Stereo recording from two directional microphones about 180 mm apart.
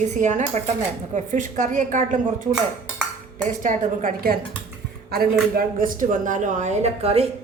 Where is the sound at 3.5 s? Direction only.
45° right (ahead or behind).